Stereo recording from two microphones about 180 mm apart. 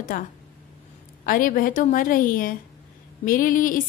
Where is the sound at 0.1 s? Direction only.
50° left (ahead or behind).